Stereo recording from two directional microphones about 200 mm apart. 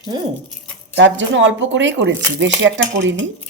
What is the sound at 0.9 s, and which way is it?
Speech, 70° right (ahead or behind).